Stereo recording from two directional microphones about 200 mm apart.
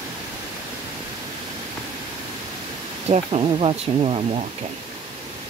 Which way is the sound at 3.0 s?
30° right (ahead or behind).